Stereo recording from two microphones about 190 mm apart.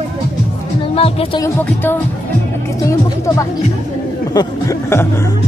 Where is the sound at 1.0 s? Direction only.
30° left (ahead or behind).